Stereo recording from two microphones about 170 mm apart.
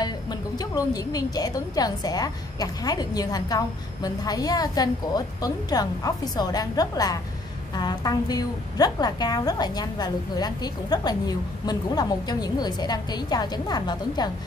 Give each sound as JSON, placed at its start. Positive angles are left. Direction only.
{"t": 0.0, "sound": "a woman's voice", "side_deg": 25}